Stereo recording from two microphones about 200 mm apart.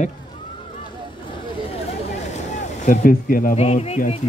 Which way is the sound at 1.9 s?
35° left (ahead or behind).